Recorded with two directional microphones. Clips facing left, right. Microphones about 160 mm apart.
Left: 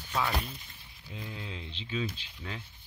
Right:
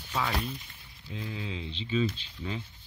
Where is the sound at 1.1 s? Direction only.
Centre (ahead or behind).